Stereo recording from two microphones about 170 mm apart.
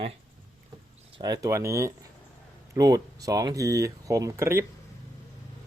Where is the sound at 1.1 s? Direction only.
25° right (ahead or behind).